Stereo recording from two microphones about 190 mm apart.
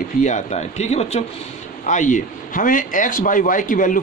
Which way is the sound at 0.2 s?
40° left (ahead or behind).